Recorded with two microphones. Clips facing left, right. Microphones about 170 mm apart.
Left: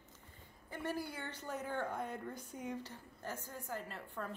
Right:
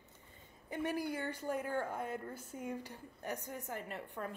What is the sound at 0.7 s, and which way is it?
A woman's voice, 15° right (ahead or behind).